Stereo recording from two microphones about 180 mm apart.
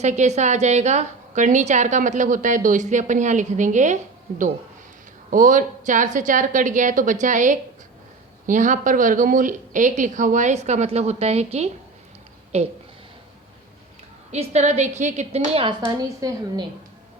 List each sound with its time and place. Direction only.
0.0 s a woman's voice: 40° right (ahead or behind)
14.3 s a woman's voice: 40° right (ahead or behind)
16.0 s a woman's voice: 20° right (ahead or behind)